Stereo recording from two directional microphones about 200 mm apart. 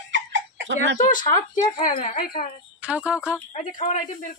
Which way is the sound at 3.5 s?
40° left (ahead or behind).